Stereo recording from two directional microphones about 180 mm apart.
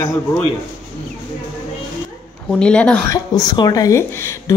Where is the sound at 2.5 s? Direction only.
5° left (ahead or behind).